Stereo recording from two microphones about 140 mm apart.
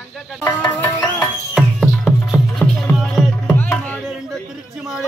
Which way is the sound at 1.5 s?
Centre (ahead or behind).